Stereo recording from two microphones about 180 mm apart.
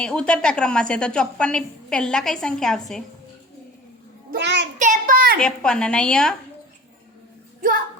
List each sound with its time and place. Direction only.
0.0 s a woman's voice: 5° left (ahead or behind)
4.4 s child singing: 75° right (ahead or behind)
4.8 s a child's voice: 45° right (ahead or behind)
5.4 s a woman's voice: 5° left (ahead or behind)